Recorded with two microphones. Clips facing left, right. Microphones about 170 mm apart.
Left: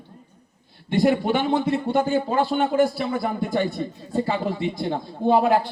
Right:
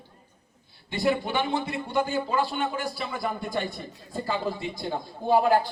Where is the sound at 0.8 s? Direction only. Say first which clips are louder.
Left 6 dB; 60° left (ahead or behind).